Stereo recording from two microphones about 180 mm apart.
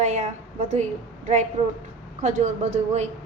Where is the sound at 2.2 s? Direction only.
40° right (ahead or behind).